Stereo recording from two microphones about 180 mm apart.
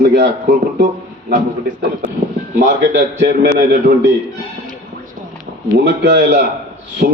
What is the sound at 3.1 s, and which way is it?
Speech, 70° right (ahead or behind).